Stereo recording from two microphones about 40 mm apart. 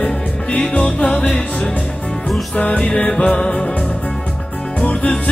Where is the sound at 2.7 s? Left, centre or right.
Centre.